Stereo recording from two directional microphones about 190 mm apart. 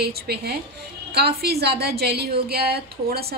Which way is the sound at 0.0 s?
55° right (ahead or behind).